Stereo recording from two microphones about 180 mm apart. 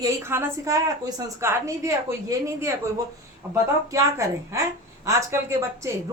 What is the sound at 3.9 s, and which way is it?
Speech, 15° right (ahead or behind).